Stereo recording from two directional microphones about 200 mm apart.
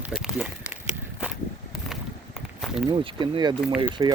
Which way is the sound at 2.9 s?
25° right (ahead or behind).